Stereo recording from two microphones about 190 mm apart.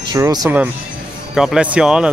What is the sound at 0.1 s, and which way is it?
Speech, 20° right (ahead or behind).